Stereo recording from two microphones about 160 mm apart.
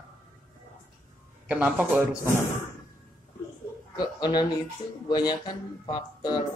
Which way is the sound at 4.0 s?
25° left (ahead or behind).